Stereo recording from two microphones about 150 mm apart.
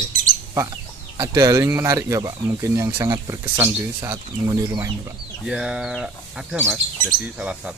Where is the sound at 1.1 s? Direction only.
25° right (ahead or behind).